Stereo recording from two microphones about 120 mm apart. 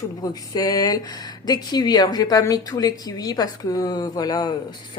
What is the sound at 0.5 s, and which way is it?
Speech, 30° left (ahead or behind).